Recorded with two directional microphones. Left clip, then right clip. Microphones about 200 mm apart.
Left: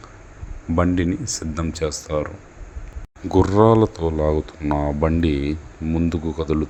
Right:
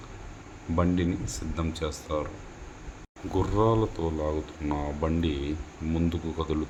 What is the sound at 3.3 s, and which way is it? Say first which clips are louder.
Speech: left 10 dB; 35° left (ahead or behind).